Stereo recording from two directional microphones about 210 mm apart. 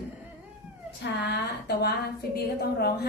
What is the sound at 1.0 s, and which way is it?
A woman's voice, 50° left (ahead or behind).